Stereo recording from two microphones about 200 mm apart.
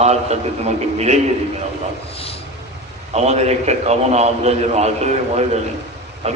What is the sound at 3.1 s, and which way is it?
A man's voice, 35° right (ahead or behind).